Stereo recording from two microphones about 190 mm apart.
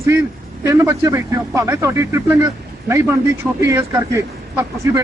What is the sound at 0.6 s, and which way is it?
A man's voice, 15° right (ahead or behind).